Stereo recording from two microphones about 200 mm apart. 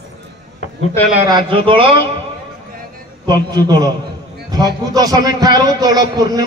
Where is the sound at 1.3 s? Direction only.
25° right (ahead or behind).